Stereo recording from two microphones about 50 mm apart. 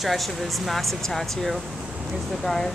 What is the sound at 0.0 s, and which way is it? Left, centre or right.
Speech, centre.